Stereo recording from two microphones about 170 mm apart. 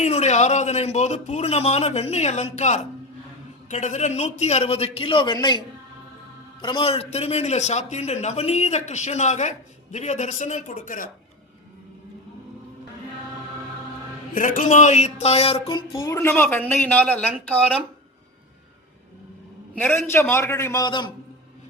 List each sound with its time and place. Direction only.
0.0 s a man's voice: 40° left (ahead or behind)
14.3 s speech: 50° left (ahead or behind)
15.7 s speech: 20° left (ahead or behind)
19.7 s speech: 10° left (ahead or behind)